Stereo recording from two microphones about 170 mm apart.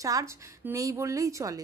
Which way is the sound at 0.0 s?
20° right (ahead or behind).